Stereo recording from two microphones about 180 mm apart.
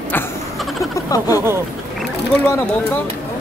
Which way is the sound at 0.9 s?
20° left (ahead or behind).